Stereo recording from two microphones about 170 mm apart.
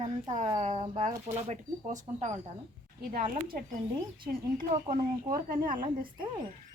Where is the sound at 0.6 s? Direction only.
45° right (ahead or behind).